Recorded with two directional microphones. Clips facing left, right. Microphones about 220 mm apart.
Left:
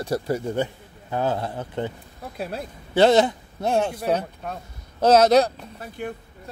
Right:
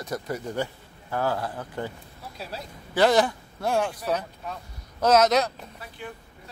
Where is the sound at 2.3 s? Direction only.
55° left (ahead or behind).